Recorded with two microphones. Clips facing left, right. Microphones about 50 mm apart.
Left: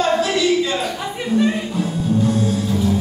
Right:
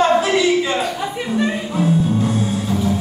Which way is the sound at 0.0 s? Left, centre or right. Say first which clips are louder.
Right 3 dB; centre.